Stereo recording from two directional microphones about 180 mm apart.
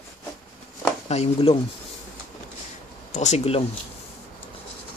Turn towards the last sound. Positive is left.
turn(degrees=35)  # may be behind; listen again after turning